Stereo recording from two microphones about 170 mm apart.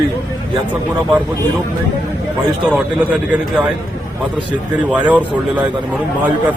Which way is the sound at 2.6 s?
5° right (ahead or behind).